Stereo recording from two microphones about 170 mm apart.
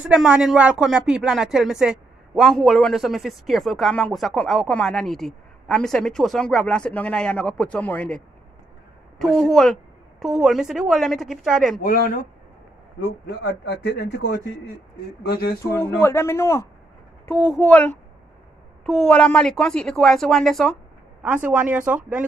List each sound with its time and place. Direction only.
0.1 s speech: 5° right (ahead or behind)
9.2 s speech: centre (ahead or behind)
11.8 s speech: 55° left (ahead or behind)
13.3 s speech: 80° left
15.6 s speech: 15° left (ahead or behind)
21.2 s speech: 10° right (ahead or behind)